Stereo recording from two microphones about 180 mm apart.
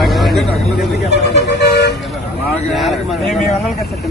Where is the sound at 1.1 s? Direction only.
70° left (ahead or behind).